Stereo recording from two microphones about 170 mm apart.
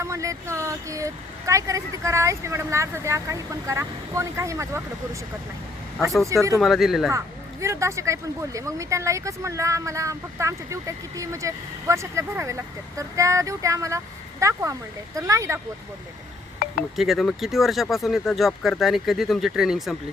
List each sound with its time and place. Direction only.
0.0 s speech: 20° right (ahead or behind)
6.2 s speech: 20° right (ahead or behind)
6.6 s speech: centre (ahead or behind)
7.6 s speech: 15° right (ahead or behind)
17.0 s speech: centre (ahead or behind)